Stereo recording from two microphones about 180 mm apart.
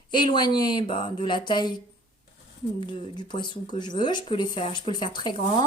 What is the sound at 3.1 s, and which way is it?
A woman's voice, 25° left (ahead or behind).